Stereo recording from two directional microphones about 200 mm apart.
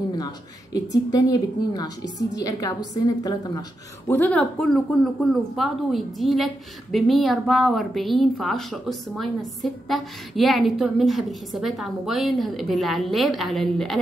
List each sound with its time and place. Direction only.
1.1 s a woman's voice: 20° left (ahead or behind)
4.1 s speech: 10° left (ahead or behind)